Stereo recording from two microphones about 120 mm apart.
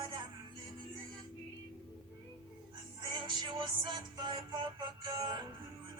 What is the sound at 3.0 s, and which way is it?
Music, 40° right (ahead or behind).